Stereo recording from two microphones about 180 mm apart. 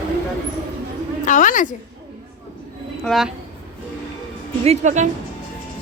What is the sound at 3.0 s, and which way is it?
Speech, centre (ahead or behind).